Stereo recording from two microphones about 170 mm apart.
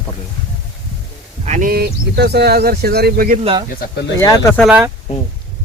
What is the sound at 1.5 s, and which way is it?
Speech, 50° right (ahead or behind).